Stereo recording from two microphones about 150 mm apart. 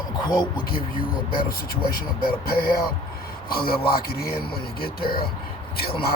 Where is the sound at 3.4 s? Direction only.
90° left.